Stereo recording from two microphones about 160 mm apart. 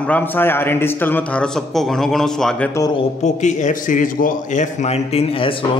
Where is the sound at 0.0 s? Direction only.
10° left (ahead or behind).